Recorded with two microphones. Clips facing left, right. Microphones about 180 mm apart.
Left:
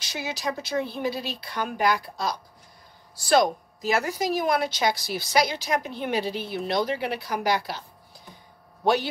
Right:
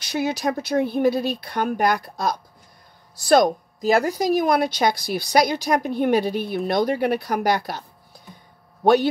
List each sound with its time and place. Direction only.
0.0 s a woman's voice: 55° right (ahead or behind); by 4.3 s 40° right (ahead or behind)
4.4 s a woman's voice: 55° right (ahead or behind)
8.8 s a woman's voice: 50° right (ahead or behind)